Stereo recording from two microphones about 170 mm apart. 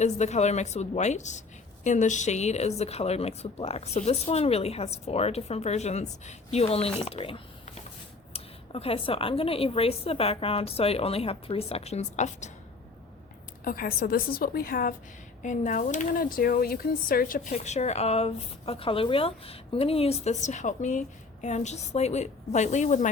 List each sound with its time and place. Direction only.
0.0 s a woman's voice: 40° left (ahead or behind)
13.7 s speech: 55° left (ahead or behind)
17.5 s a woman's voice: 40° left (ahead or behind)